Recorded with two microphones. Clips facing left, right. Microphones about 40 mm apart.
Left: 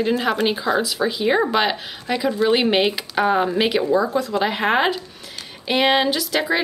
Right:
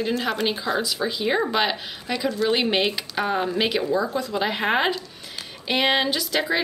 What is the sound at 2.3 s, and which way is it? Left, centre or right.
Speech, centre.